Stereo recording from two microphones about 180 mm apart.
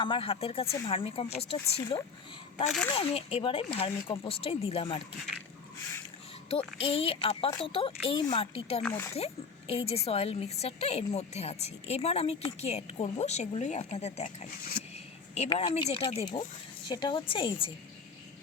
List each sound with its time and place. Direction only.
0.0 s a woman's voice: 30° left (ahead or behind)
6.7 s a woman's voice: 30° left (ahead or behind)
14.9 s a sound: 35° left (ahead or behind)
15.9 s a woman's voice: 35° left (ahead or behind)